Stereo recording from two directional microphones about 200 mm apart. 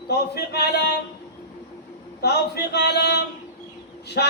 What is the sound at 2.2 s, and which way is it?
Speech, 55° left (ahead or behind).